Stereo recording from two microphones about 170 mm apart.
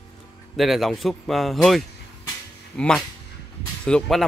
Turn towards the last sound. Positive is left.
turn(degrees=5)  # may be behind; listen again after turning